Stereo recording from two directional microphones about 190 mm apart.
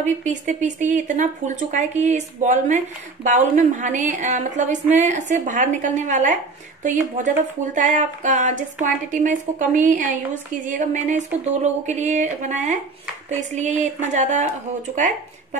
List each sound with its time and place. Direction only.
0.0 s speech: 40° right (ahead or behind)